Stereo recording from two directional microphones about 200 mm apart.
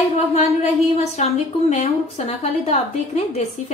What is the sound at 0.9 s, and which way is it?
A woman's voice, 35° left (ahead or behind).